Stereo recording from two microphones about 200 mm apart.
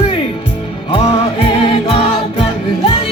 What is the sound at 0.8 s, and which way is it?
Music, 30° left (ahead or behind).